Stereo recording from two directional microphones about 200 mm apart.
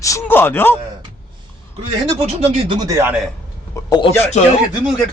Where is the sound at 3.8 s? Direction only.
20° left (ahead or behind).